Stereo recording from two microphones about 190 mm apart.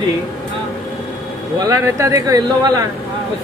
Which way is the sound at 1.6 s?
15° right (ahead or behind).